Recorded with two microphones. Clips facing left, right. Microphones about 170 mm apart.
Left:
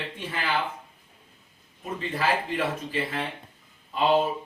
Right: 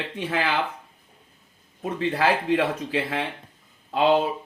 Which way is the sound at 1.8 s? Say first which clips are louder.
Right 6 dB; 80° right.